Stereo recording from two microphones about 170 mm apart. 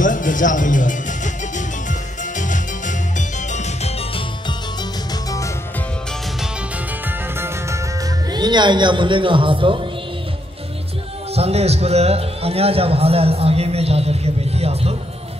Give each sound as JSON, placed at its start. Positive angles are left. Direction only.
{"t": 0.0, "sound": "speech", "side_deg": 50}
{"t": 1.9, "sound": "music", "side_deg": 50}
{"t": 7.1, "sound": "music", "side_deg": -15}
{"t": 8.3, "sound": "a man's voice", "side_deg": -25}
{"t": 11.3, "sound": "a man's voice", "side_deg": -35}